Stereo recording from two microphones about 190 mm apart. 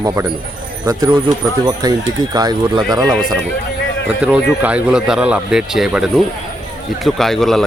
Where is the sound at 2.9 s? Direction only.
5° left (ahead or behind).